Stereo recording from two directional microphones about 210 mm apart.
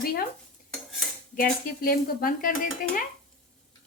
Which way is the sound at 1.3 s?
45° left (ahead or behind).